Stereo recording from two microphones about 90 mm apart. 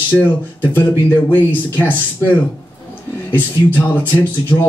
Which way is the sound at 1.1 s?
20° left (ahead or behind).